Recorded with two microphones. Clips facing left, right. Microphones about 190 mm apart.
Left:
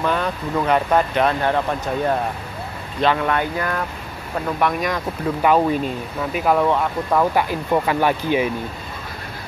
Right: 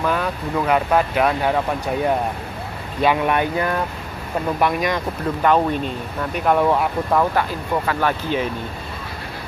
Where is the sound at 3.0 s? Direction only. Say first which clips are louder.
Right 1 dB; 15° right (ahead or behind).